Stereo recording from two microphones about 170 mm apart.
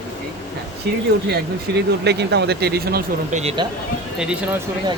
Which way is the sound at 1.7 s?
75° right (ahead or behind).